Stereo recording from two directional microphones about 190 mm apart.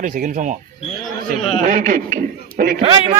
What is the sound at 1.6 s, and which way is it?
Speech, 45° right (ahead or behind).